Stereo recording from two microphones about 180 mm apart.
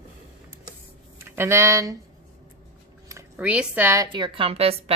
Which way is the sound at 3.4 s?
5° right (ahead or behind).